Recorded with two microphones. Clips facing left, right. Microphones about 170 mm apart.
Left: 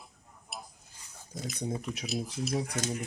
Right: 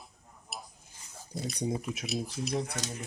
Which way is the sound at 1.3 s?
35° right (ahead or behind).